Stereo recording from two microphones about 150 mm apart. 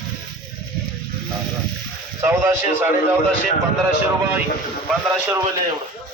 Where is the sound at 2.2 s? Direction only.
15° right (ahead or behind).